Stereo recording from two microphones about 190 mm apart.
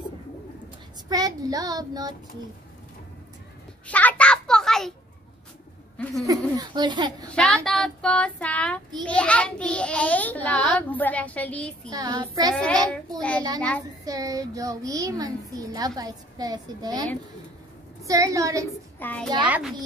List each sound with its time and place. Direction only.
1.0 s a child's voice: 20° right (ahead or behind)
3.8 s a sound: 10° left (ahead or behind)
6.2 s a child's voice: 20° right (ahead or behind)
7.3 s a child's voice: 5° left (ahead or behind)
11.9 s a child's voice: 20° right (ahead or behind)
12.5 s a child's voice: 5° left (ahead or behind)
14.0 s a child's voice: 20° right (ahead or behind)
18.9 s a child's voice: 10° left (ahead or behind)